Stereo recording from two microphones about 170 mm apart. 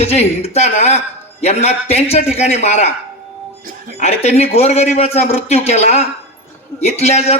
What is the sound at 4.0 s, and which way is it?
A man's voice, 40° left (ahead or behind).